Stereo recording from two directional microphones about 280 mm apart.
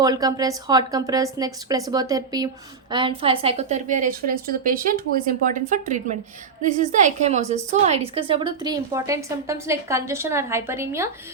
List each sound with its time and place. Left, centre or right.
0.0 s a woman's voice: centre